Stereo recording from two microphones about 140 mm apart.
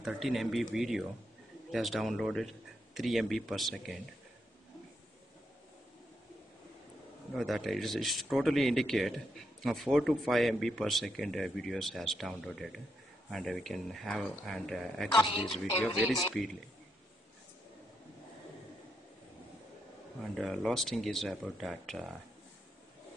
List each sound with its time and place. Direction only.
0.0 s speech: centre (ahead or behind)
7.3 s speech: centre (ahead or behind)
15.1 s a woman's voice: 40° left (ahead or behind)
16.1 s speech: centre (ahead or behind)
20.3 s speech: centre (ahead or behind)